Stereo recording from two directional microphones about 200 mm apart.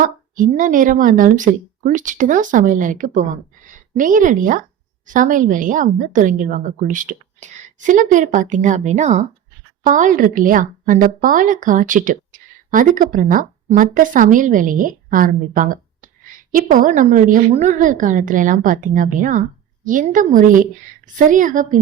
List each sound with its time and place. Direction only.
0.0 s a woman's voice: 40° right (ahead or behind)